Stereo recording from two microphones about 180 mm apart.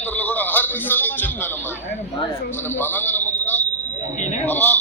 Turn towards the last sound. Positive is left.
turn(degrees=10)  # may be behind; listen again after turning